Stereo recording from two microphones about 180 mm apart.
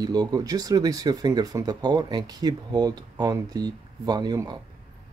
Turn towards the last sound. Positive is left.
turn(degrees=-20)  # may be behind; listen again after turning